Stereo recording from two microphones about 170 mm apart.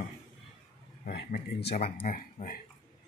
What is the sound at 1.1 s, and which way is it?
Speech, 80° left.